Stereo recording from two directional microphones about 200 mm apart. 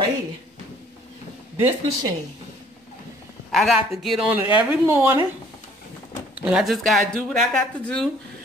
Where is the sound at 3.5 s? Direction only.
Centre (ahead or behind).